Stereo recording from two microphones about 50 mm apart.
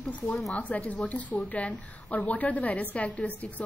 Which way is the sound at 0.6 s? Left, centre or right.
Left.